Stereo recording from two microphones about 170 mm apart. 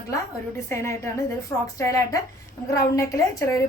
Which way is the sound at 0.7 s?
15° left (ahead or behind).